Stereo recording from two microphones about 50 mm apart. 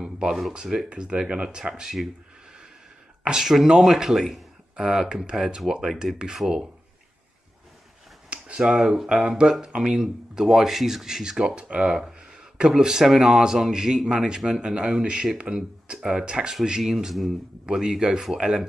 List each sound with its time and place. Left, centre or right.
0.5 s speech: centre
3.3 s speech: centre
8.3 s speech: centre